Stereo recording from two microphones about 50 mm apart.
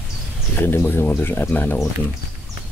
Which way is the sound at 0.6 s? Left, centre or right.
Left.